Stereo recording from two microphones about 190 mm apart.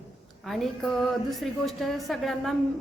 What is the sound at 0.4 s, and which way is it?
A woman's voice, centre (ahead or behind).